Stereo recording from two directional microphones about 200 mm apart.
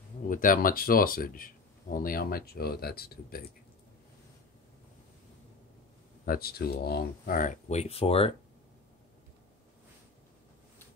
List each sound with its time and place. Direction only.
0.3 s speech: 45° left (ahead or behind)
6.2 s speech: 45° left (ahead or behind); by 8.3 s 30° left (ahead or behind)